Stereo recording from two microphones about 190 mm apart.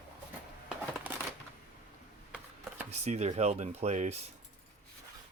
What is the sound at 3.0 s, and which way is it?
Speech, 35° right (ahead or behind).